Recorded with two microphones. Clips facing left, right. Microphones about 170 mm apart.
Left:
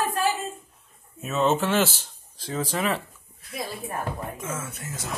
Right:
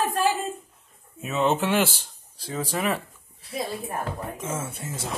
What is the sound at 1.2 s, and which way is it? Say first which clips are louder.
Speech: even; 15° right (ahead or behind).